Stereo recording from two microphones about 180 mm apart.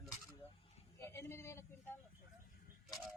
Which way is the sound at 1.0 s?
15° left (ahead or behind).